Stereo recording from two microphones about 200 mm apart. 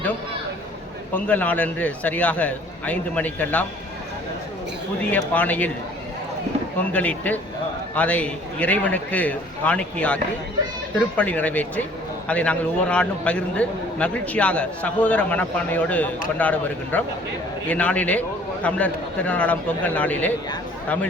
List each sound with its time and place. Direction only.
1.1 s a man's voice: 5° left (ahead or behind)
5.1 s a man's voice: 10° left (ahead or behind)
6.9 s a man's voice: 5° left (ahead or behind)
11.2 s a man's voice: 5° left (ahead or behind)